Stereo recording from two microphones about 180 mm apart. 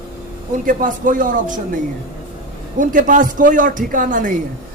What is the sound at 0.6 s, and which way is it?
Speech, 50° right (ahead or behind).